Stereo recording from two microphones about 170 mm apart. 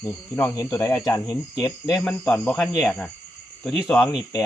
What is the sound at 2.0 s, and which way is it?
Speech, 5° left (ahead or behind).